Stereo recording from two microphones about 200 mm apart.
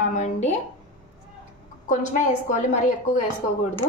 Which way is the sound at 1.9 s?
40° left (ahead or behind).